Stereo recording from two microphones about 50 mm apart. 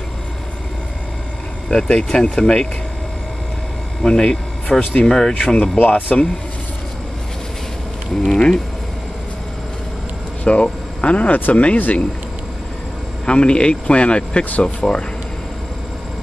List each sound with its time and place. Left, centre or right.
1.7 s speech: centre
4.0 s speech: centre
5.3 s speech: left
8.3 s speech: centre
10.4 s speech: left
13.2 s speech: centre